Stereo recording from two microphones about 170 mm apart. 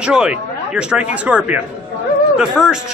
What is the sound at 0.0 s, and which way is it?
A man's voice, 5° right (ahead or behind).